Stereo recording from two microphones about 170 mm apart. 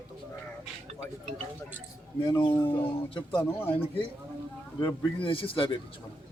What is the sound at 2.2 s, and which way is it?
Speech, 20° left (ahead or behind).